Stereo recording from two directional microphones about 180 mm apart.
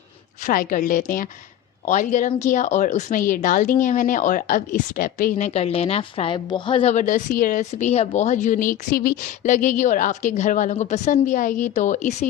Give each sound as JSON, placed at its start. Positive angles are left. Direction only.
{"t": 0.4, "sound": "a woman's voice", "side_deg": 50}
{"t": 6.9, "sound": "a woman's voice", "side_deg": 45}